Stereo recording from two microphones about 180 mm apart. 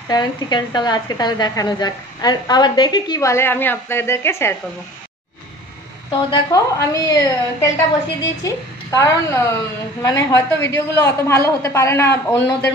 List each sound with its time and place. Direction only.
0.1 s a woman's voice: 25° left (ahead or behind)
6.3 s a woman's voice: 20° left (ahead or behind)